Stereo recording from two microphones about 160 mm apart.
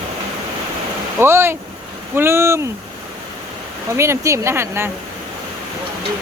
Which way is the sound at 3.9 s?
15° right (ahead or behind).